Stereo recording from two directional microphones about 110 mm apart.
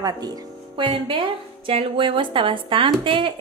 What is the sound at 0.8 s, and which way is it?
A woman's voice, 50° right (ahead or behind).